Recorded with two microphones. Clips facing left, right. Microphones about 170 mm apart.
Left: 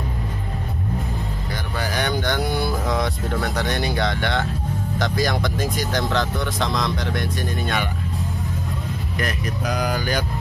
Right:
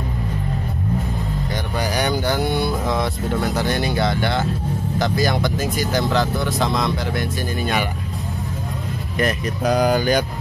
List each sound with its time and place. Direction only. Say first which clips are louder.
2.0 s speech: right 2 dB; 10° right (ahead or behind)
9.2 s speech: right 6 dB; 30° right (ahead or behind)